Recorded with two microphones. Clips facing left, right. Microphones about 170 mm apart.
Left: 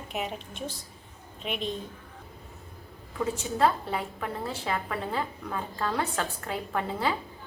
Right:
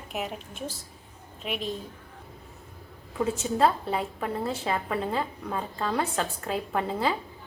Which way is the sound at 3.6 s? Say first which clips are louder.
Right 1 dB; 25° right (ahead or behind).